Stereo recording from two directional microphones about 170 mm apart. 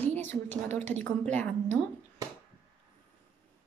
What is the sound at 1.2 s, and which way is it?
Speech, 10° left (ahead or behind).